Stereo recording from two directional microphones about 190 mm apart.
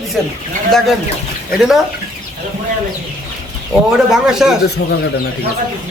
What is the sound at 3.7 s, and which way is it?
Speech, centre (ahead or behind).